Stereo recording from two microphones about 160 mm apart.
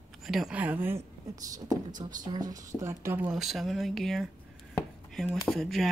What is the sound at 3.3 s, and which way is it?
Speech, centre (ahead or behind).